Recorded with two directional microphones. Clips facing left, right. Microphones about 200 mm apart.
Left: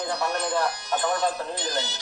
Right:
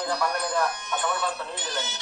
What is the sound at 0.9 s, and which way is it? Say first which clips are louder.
Speech: left 6 dB; 40° left (ahead or behind).